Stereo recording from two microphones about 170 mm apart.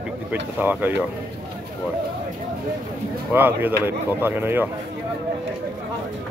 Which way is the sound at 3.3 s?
10° right (ahead or behind).